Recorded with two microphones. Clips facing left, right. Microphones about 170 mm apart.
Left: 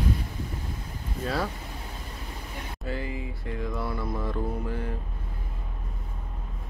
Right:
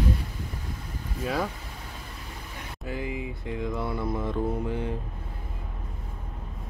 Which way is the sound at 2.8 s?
15° right (ahead or behind).